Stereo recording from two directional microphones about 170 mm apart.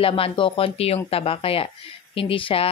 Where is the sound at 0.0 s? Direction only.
30° left (ahead or behind).